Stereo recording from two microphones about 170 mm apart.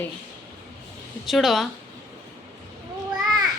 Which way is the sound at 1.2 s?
Centre (ahead or behind).